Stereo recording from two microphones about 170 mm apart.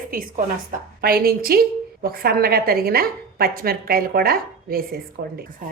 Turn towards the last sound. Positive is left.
turn(degrees=-65)  # may be behind; listen again after turning